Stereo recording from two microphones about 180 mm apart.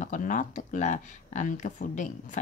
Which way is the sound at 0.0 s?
45° left (ahead or behind).